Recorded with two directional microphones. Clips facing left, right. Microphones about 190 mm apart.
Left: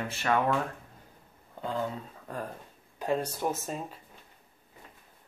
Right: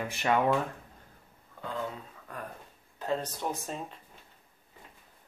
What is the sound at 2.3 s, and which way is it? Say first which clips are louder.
Speech: left 5 dB; 30° left (ahead or behind).